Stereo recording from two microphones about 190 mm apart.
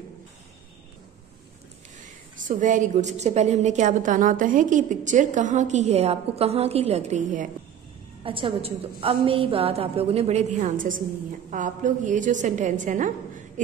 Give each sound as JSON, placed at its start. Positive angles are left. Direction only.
{"t": 2.0, "sound": "a woman's voice", "side_deg": -45}
{"t": 8.2, "sound": "a woman's voice", "side_deg": -30}